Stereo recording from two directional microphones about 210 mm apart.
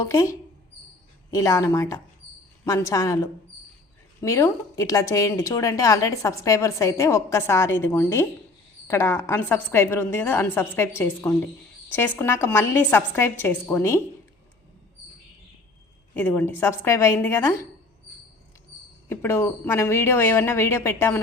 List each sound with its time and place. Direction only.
0.0 s a woman's voice: 15° left (ahead or behind)
4.2 s a woman's voice: 15° left (ahead or behind)
16.1 s a woman's voice: 10° left (ahead or behind)
19.0 s a woman's voice: 10° left (ahead or behind)